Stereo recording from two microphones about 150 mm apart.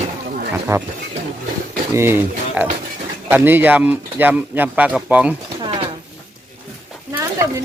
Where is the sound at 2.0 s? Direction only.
15° right (ahead or behind).